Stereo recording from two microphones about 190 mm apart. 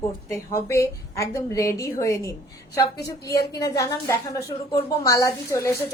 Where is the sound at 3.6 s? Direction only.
20° left (ahead or behind).